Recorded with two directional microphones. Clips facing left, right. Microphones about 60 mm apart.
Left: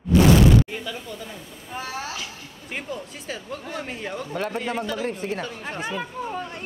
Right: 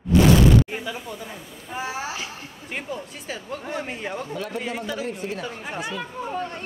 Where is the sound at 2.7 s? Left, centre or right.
Centre.